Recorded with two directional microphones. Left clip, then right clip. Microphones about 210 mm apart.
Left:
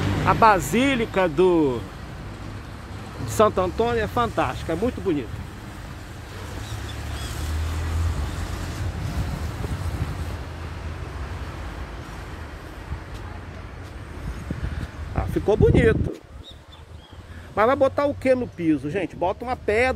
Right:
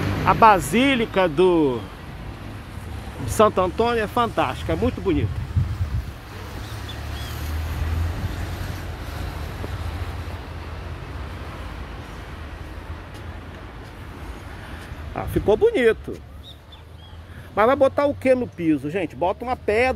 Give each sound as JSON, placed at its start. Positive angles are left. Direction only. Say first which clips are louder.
{"t": 0.2, "sound": "speech", "louder": "right 2 dB", "side_deg": -10}
{"t": 3.3, "sound": "speech", "louder": "right 2 dB", "side_deg": -10}
{"t": 7.2, "sound": "vehicle", "louder": "even", "side_deg": 50}
{"t": 15.1, "sound": "speech", "louder": "right 2 dB", "side_deg": -15}
{"t": 17.6, "sound": "speech", "louder": "right 2 dB", "side_deg": -15}